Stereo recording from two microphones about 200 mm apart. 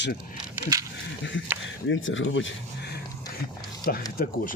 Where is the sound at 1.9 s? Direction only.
75° left (ahead or behind).